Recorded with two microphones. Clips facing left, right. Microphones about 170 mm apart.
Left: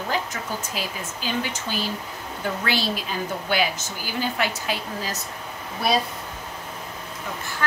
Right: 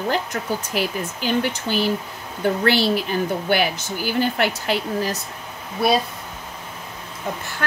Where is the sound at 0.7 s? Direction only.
65° right (ahead or behind).